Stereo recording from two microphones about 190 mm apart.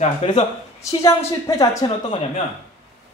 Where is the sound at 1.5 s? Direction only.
15° left (ahead or behind).